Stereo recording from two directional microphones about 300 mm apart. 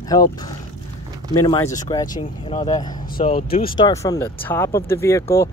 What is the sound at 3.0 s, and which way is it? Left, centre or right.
Speech, left.